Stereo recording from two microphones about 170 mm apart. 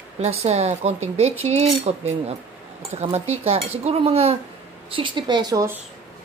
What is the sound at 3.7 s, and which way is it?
Speech, 35° right (ahead or behind).